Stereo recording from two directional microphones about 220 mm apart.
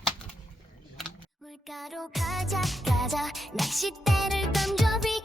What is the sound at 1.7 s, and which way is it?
Music, centre (ahead or behind).